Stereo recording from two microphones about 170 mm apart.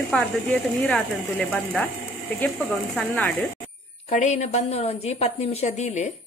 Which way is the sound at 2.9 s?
5° left (ahead or behind).